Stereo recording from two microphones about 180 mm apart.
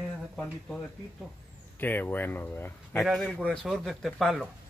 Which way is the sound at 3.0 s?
Centre (ahead or behind).